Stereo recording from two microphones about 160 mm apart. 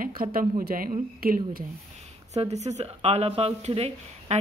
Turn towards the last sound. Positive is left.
turn(degrees=-40)  # may be behind; listen again after turning